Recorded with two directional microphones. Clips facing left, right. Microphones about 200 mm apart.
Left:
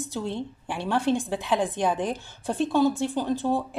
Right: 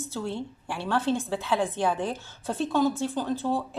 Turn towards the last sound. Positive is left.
turn(degrees=15)  # may be behind; listen again after turning